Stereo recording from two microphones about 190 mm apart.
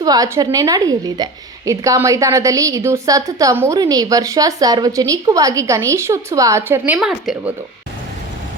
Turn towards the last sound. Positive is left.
turn(degrees=0)  # may be behind; listen again after turning